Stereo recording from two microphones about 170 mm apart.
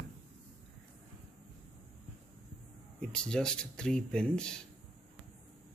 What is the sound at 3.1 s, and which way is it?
Speech, 5° left (ahead or behind).